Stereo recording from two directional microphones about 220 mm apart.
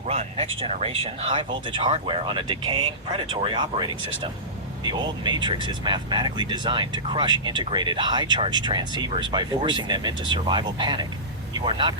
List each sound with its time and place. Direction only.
0.1 s speech: 30° right (ahead or behind)